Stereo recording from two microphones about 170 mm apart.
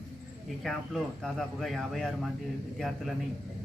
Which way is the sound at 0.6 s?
Centre (ahead or behind).